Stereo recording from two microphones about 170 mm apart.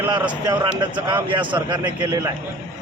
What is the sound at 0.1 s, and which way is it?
A man's voice, 25° right (ahead or behind).